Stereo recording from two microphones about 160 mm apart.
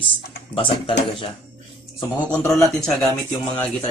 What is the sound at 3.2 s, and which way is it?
Speech, 15° left (ahead or behind).